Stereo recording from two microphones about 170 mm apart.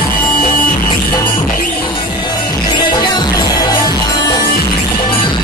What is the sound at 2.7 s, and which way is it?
Music, 25° left (ahead or behind).